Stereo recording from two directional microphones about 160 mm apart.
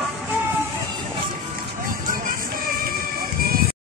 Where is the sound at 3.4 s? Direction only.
65° right (ahead or behind).